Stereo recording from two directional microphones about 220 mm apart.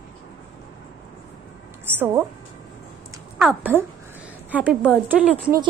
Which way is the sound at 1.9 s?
10° right (ahead or behind).